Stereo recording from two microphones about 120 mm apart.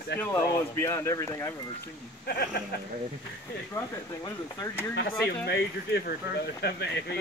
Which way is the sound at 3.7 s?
20° left (ahead or behind).